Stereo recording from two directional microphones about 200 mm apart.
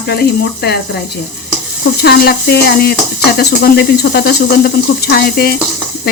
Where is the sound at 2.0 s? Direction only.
55° left (ahead or behind).